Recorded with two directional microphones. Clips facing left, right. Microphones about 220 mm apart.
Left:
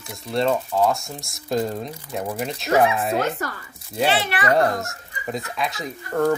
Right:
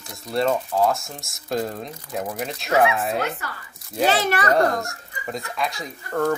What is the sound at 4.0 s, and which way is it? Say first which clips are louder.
Speech: right 1 dB; 40° right (ahead or behind).